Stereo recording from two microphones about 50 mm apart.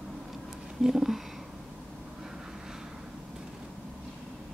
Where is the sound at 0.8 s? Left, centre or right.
Centre.